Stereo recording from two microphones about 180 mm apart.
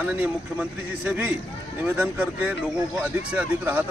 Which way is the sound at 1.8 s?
10° right (ahead or behind).